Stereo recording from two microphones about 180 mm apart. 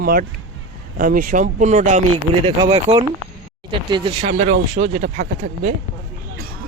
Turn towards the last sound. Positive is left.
turn(degrees=-45)  # may be behind; listen again after turning